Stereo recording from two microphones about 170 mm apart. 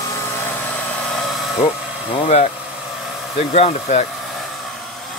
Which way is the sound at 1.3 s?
Centre (ahead or behind).